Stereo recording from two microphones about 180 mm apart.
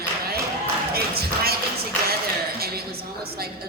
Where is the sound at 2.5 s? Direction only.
60° right (ahead or behind).